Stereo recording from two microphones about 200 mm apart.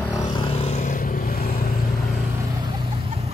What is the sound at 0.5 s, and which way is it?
Vehicle, 35° left (ahead or behind).